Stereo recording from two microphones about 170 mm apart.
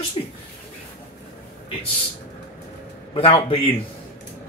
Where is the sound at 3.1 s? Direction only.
30° left (ahead or behind).